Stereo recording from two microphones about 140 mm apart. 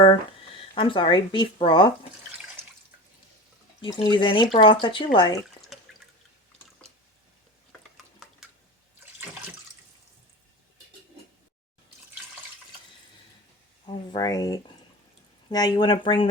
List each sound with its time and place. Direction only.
0.0 s speech: 40° left (ahead or behind)
2.6 s drip: 15° right (ahead or behind)
3.9 s speech: 35° left (ahead or behind)
7.9 s a sound: centre (ahead or behind)
13.8 s a sound: 35° left (ahead or behind)
14.2 s speech: 25° left (ahead or behind)